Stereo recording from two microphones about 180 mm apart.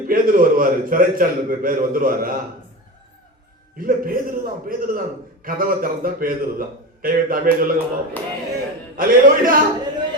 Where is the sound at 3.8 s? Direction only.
50° right (ahead or behind).